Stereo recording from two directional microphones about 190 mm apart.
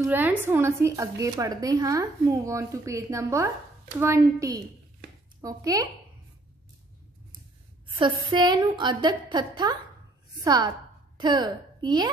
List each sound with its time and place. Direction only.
0.0 s a woman's voice: 10° right (ahead or behind)
8.0 s a woman's voice: 25° right (ahead or behind)